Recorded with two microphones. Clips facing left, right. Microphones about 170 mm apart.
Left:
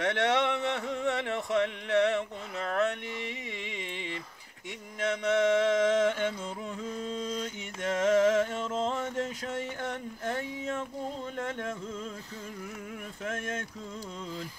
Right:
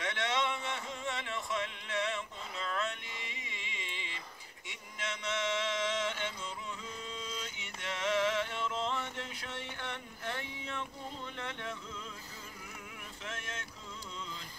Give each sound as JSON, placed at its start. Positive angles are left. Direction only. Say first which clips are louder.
{"t": 0.0, "sound": "a sound", "louder": "left 8 dB", "side_deg": 65}
{"t": 5.0, "sound": "music", "louder": "left 11 dB", "side_deg": 55}
{"t": 6.8, "sound": "mantra", "louder": "left 9 dB", "side_deg": 45}
{"t": 11.3, "sound": "music", "louder": "left 7 dB", "side_deg": 45}
{"t": 13.2, "sound": "speech", "louder": "left 9 dB", "side_deg": 50}